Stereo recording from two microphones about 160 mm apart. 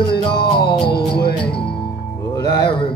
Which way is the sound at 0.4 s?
80° left.